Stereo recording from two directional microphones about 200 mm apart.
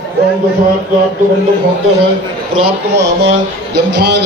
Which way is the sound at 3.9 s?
60° right (ahead or behind).